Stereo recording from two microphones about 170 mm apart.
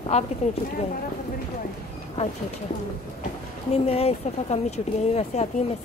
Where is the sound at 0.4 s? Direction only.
40° left (ahead or behind).